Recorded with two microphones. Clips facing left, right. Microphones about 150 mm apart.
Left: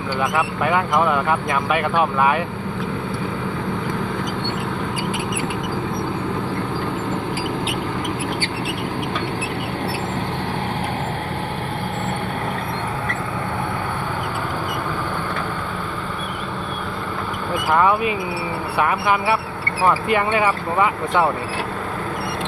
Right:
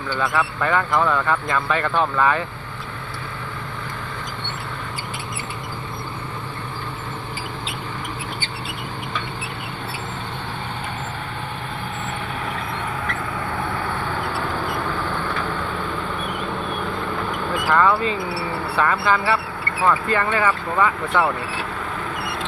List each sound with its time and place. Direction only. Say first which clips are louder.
0.2 s speech: left 1 dB; 15° left (ahead or behind)
17.5 s vehicle: left 1 dB; 15° left (ahead or behind)
18.8 s speech: left 1 dB; 15° left (ahead or behind)